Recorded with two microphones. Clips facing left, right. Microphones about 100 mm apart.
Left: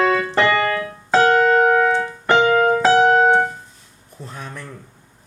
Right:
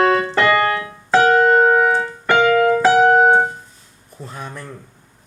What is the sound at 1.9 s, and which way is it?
Keyboard, 20° left (ahead or behind).